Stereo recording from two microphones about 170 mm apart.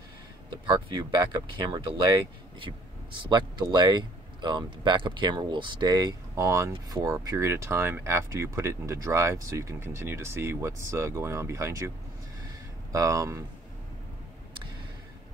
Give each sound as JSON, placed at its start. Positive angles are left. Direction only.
{"t": 0.7, "sound": "speech", "side_deg": -25}
{"t": 12.9, "sound": "speech", "side_deg": -20}